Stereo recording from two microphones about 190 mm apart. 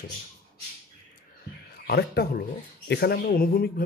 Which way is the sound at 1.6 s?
55° left (ahead or behind).